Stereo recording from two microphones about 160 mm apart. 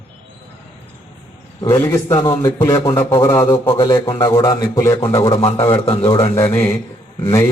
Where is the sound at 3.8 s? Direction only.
30° left (ahead or behind).